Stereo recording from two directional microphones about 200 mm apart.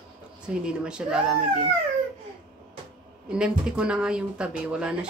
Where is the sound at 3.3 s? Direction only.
5° right (ahead or behind).